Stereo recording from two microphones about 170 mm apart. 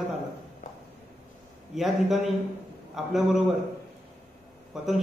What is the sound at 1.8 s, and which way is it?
A man's voice, centre (ahead or behind).